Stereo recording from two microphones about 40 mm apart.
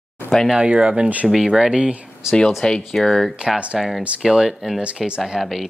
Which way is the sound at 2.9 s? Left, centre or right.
Centre.